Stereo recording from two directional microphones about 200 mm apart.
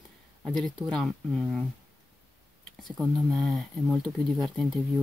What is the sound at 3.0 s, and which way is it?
Speech, centre (ahead or behind).